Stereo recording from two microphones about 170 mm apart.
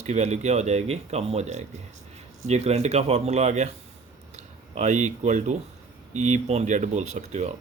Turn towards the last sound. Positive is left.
turn(degrees=-40)  # may be behind; listen again after turning